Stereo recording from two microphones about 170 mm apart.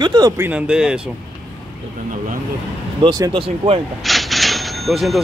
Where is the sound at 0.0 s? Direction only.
25° right (ahead or behind).